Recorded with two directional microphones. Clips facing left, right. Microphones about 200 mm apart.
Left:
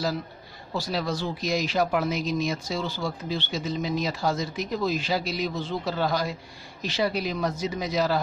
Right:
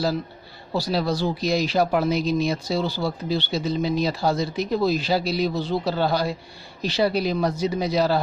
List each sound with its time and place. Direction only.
0.7 s speech: 35° right (ahead or behind)